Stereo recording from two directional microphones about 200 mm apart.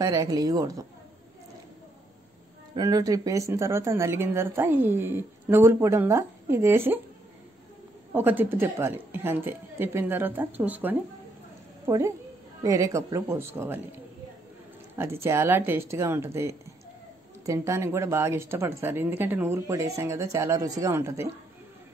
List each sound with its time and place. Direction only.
0.0 s speech: 15° right (ahead or behind)
2.7 s speech: 20° right (ahead or behind)
8.1 s speech: 10° right (ahead or behind)
12.6 s speech: 15° right (ahead or behind)
15.0 s speech: 15° right (ahead or behind)